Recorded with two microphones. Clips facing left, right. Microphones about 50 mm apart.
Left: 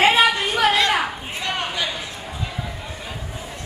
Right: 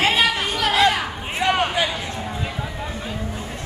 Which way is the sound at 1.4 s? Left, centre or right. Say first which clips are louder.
Right 6 dB; right.